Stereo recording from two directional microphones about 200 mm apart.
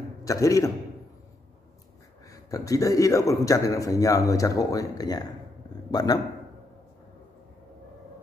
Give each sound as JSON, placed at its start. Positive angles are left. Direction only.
{"t": 0.2, "sound": "a man's voice", "side_deg": 15}
{"t": 2.2, "sound": "a man's voice", "side_deg": 15}